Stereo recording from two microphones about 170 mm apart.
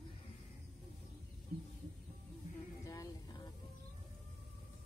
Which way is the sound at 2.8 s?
20° left (ahead or behind).